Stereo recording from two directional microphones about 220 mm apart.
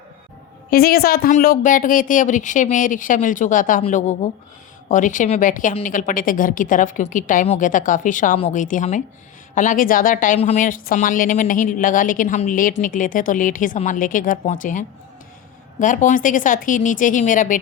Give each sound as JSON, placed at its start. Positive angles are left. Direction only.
{"t": 0.7, "sound": "a woman's voice", "side_deg": 45}